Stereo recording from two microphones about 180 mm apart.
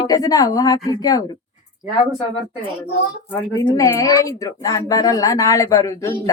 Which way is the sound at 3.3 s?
20° left (ahead or behind).